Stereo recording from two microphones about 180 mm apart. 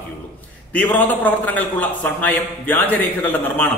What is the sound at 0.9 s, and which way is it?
A man's voice, 10° left (ahead or behind).